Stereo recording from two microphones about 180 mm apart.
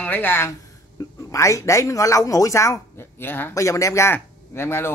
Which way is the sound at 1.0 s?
15° left (ahead or behind).